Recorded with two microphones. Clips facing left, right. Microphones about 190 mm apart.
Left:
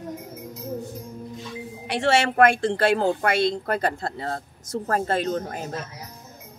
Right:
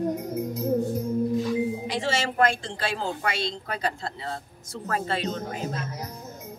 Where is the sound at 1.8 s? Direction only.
65° left (ahead or behind); by 5.6 s 50° left (ahead or behind).